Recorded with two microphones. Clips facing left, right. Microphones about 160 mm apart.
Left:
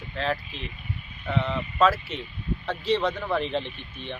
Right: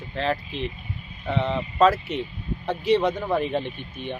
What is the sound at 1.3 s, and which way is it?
Speech, 30° right (ahead or behind).